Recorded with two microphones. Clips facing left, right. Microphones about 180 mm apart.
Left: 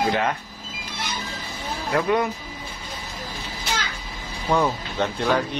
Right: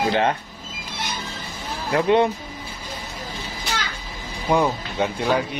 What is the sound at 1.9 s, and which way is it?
Speech, 30° right (ahead or behind).